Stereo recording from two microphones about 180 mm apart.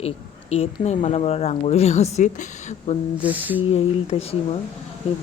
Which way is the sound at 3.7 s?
35° left (ahead or behind).